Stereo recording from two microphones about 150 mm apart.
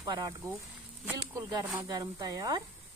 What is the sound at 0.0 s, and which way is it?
Speech, 25° right (ahead or behind).